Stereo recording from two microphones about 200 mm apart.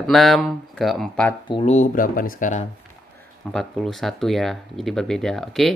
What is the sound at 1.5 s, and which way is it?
Speech, 30° left (ahead or behind).